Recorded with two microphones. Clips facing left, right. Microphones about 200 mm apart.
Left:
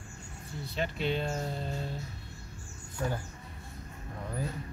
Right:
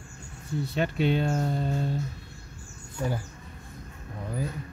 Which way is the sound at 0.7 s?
55° right (ahead or behind).